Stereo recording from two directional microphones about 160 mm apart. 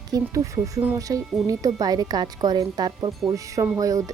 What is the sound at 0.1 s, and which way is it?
Speech, 20° right (ahead or behind).